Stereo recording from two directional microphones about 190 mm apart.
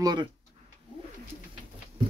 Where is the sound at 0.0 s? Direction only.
20° right (ahead or behind).